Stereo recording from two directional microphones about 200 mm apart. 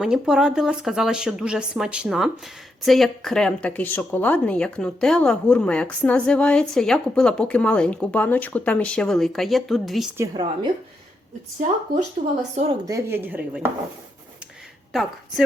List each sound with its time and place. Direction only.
0.0 s a woman's voice: 5° right (ahead or behind)
10.2 s a woman's voice: 20° right (ahead or behind)
12.2 s a woman's voice: 35° right (ahead or behind)
12.8 s speech: 15° right (ahead or behind)